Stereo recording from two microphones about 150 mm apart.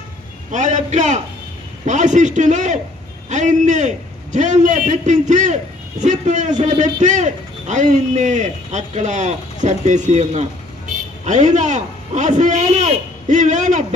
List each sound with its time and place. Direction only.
0.5 s a man's voice: 55° right (ahead or behind)